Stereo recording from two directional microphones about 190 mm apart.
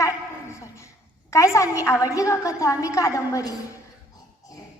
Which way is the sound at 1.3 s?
15° left (ahead or behind).